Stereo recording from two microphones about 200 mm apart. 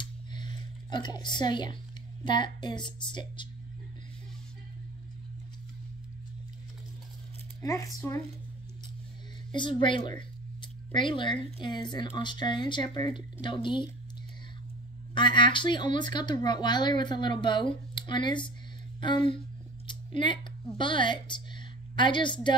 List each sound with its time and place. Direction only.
0.0 s a sound: 20° left (ahead or behind)
2.2 s speech: 25° left (ahead or behind)
7.6 s speech: 15° left (ahead or behind)
9.5 s speech: 25° left (ahead or behind)
15.1 s speech: 25° left (ahead or behind)